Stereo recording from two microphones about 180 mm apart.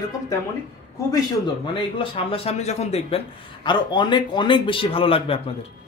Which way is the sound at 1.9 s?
30° left (ahead or behind).